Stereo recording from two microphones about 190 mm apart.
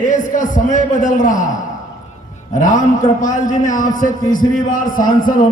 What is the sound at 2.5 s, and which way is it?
A man's voice, 40° left (ahead or behind).